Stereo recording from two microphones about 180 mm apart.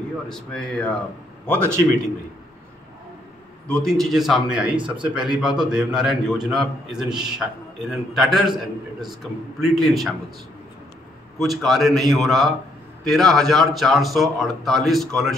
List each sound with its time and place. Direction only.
0.3 s a man's voice: 5° left (ahead or behind)
3.6 s a man's voice: 5° left (ahead or behind)
4.7 s speech: 25° right (ahead or behind)
5.0 s a man's voice: 5° right (ahead or behind)
11.3 s a man's voice: centre (ahead or behind)